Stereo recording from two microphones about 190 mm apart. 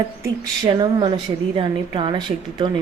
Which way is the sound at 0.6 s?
25° right (ahead or behind).